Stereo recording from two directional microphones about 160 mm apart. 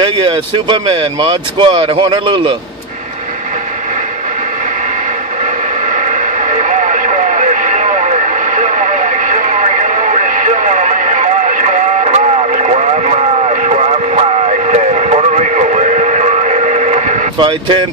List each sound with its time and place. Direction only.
0.0 s speech: 30° right (ahead or behind)
5.9 s radio: 50° right (ahead or behind)
17.4 s speech: 30° right (ahead or behind)